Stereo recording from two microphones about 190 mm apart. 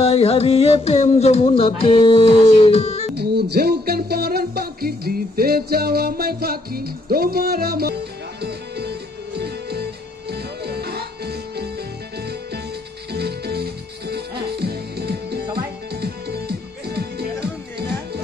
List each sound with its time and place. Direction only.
0.0 s a sound: 30° left (ahead or behind)
3.2 s music: 55° right (ahead or behind)
13.1 s music: 60° right (ahead or behind)